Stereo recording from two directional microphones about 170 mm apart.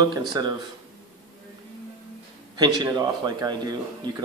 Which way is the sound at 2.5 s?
25° right (ahead or behind).